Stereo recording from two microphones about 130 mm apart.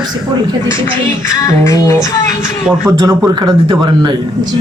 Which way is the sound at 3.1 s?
25° right (ahead or behind).